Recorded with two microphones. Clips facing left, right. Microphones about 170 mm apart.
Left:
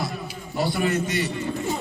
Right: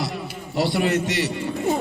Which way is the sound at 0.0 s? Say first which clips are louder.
Right 2 dB; 75° right (ahead or behind).